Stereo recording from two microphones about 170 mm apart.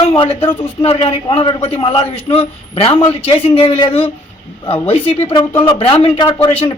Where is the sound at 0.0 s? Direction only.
30° left (ahead or behind).